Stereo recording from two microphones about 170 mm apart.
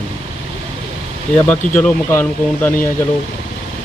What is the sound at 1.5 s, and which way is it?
Speech, 10° left (ahead or behind).